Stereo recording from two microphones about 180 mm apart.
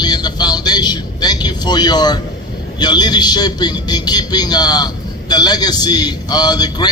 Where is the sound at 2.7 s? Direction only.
25° left (ahead or behind).